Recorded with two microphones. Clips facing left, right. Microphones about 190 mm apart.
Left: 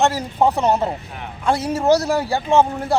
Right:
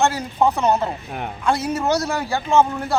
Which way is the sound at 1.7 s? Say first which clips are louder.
Left 4 dB; 30° left (ahead or behind).